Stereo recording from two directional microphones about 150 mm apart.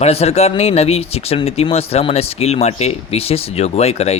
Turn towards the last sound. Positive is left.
turn(degrees=45)  # may be behind; listen again after turning